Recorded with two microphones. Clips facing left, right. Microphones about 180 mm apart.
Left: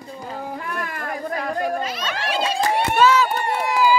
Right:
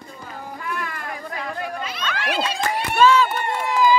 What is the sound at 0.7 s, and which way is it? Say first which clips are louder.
Children playing: left 2 dB; 45° left (ahead or behind).